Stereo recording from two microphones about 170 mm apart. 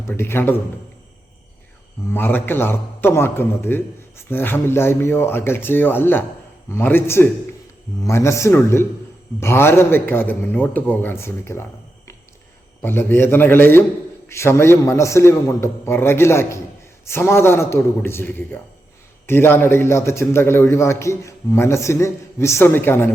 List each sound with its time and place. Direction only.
0.1 s a man's voice: 15° left (ahead or behind)
2.0 s a man's voice: 10° left (ahead or behind)
12.8 s a man's voice: 10° left (ahead or behind)